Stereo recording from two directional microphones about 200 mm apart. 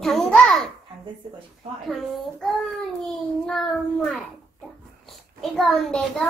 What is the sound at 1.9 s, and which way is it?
A child's voice, centre (ahead or behind).